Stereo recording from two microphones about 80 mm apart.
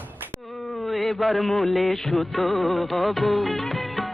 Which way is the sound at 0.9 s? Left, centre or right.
Centre.